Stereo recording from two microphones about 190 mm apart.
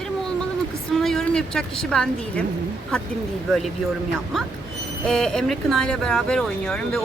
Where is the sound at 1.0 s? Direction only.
5° left (ahead or behind).